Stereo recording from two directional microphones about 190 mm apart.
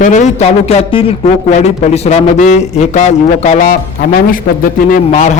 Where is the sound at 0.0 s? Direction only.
40° left (ahead or behind).